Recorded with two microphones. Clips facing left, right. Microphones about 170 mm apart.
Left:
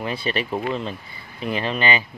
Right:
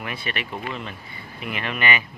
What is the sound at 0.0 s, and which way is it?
Speech, 30° left (ahead or behind).